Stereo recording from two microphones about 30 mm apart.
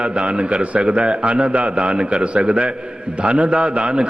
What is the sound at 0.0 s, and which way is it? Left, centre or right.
Speech, right.